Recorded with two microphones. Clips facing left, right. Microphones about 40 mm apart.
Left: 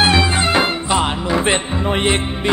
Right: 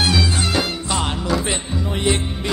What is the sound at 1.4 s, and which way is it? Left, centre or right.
Music, left.